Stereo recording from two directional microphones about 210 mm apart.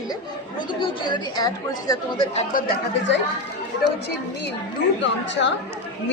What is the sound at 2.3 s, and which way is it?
Speech, 40° left (ahead or behind).